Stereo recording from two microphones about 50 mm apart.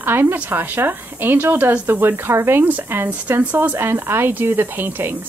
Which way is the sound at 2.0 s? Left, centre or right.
Right.